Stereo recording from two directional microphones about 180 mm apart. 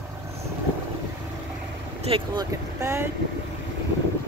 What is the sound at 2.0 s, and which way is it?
Speech, 25° right (ahead or behind).